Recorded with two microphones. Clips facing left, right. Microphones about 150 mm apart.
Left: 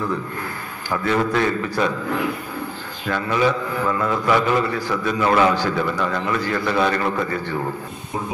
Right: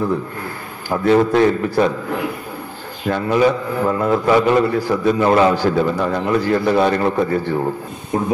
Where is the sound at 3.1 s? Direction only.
35° right (ahead or behind).